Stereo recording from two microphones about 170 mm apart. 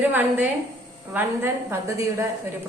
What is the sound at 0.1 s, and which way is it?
A woman's voice, 10° right (ahead or behind).